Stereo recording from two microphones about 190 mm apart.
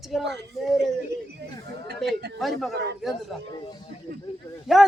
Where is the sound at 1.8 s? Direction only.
60° right (ahead or behind).